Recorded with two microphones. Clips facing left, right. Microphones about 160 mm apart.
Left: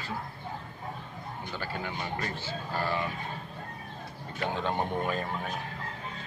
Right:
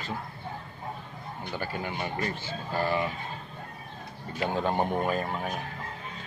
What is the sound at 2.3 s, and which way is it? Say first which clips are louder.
Speech: right 2 dB; 15° right (ahead or behind).